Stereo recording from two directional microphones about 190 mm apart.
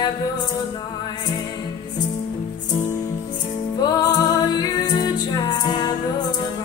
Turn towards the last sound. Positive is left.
turn(degrees=20)  # may be behind; listen again after turning